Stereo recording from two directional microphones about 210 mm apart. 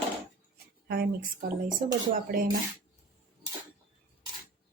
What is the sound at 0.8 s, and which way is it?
Speech, 50° right (ahead or behind).